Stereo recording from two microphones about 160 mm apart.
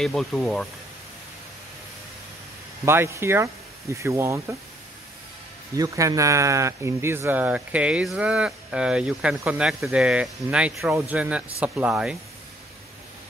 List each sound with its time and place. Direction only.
0.0 s speech: centre (ahead or behind)
2.8 s speech: 15° right (ahead or behind)
5.8 s speech: 20° right (ahead or behind)